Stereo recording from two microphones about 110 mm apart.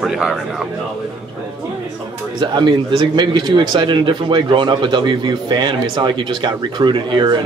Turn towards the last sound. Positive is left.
turn(degrees=-45)  # may be behind; listen again after turning